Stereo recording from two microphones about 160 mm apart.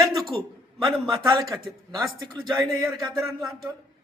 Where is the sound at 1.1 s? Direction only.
25° right (ahead or behind).